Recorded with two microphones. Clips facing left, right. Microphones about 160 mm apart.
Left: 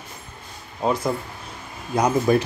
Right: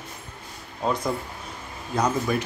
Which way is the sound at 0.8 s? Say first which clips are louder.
Left 3 dB; 5° left (ahead or behind).